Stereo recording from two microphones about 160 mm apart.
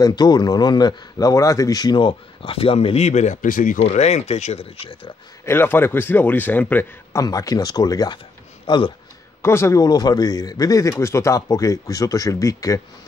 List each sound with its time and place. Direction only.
0.0 s a man's voice: 25° left (ahead or behind); by 3.8 s 55° left (ahead or behind)
3.8 s speech: 45° left (ahead or behind)
5.4 s a man's voice: 15° left (ahead or behind)
9.4 s a man's voice: 15° left (ahead or behind)